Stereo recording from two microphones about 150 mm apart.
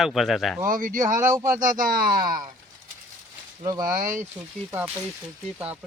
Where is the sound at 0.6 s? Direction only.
65° right (ahead or behind).